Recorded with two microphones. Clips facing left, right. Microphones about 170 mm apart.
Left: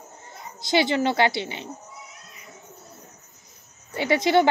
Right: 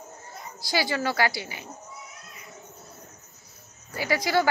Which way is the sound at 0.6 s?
20° left (ahead or behind).